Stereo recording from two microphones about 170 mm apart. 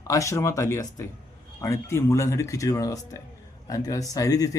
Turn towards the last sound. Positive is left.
turn(degrees=20)  # may be behind; listen again after turning